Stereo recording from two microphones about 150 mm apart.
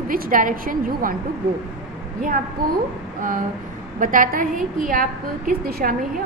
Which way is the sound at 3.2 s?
65° right (ahead or behind).